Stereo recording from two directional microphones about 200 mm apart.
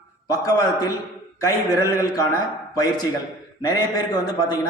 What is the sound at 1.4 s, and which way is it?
Mantra, 15° left (ahead or behind).